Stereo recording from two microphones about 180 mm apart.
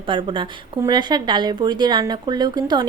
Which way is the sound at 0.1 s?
25° right (ahead or behind).